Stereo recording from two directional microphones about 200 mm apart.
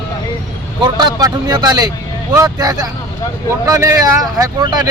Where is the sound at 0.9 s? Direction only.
20° right (ahead or behind).